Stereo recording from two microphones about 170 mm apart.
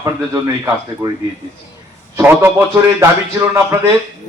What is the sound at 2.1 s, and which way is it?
Speech, 15° right (ahead or behind).